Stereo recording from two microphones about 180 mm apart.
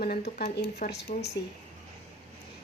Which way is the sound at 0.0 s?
60° left (ahead or behind).